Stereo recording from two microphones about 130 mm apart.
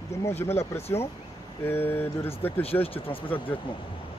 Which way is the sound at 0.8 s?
50° left (ahead or behind).